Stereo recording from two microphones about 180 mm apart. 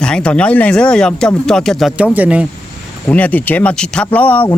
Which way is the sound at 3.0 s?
10° left (ahead or behind).